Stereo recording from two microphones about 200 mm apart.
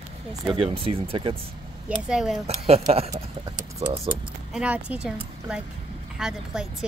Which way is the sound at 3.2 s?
25° right (ahead or behind).